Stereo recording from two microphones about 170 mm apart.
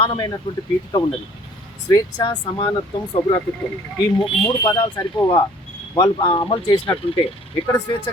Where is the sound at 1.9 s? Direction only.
20° left (ahead or behind).